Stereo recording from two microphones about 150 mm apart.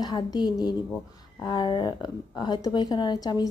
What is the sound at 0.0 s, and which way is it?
A woman's voice, 25° left (ahead or behind).